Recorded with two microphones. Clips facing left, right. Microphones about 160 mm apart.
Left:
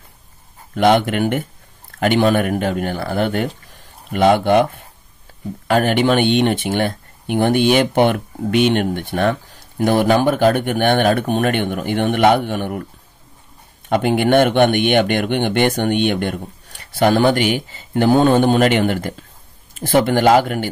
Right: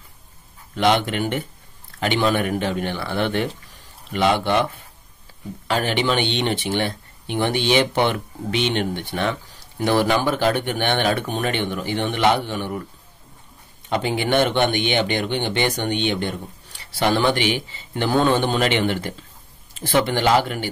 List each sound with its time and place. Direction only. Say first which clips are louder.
0.7 s speech: left 5 dB; 50° left (ahead or behind)
5.7 s speech: left 6 dB; 50° left (ahead or behind)
13.8 s speech: left 6 dB; 55° left (ahead or behind)